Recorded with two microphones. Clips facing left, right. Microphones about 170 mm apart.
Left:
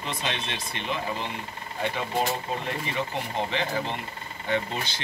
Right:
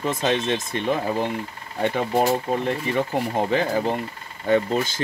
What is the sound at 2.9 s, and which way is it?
Speech, 45° right (ahead or behind).